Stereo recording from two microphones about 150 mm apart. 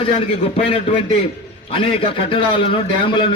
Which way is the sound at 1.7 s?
40° left (ahead or behind).